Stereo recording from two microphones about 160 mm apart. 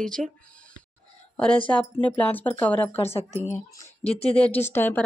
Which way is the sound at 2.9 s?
40° left (ahead or behind).